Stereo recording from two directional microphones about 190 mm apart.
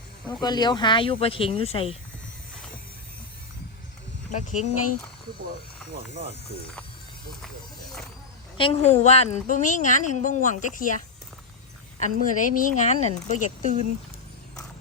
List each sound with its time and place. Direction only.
0.4 s speech: 20° left (ahead or behind)
4.3 s a woman's voice: 40° left (ahead or behind)
8.5 s a woman's voice: 30° left (ahead or behind)
11.9 s a woman's voice: 45° left (ahead or behind)